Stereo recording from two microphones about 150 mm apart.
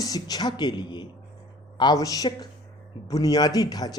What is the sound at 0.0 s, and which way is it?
A man's voice, 25° left (ahead or behind).